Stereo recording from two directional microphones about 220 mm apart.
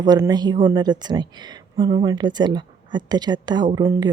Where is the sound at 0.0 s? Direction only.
20° right (ahead or behind).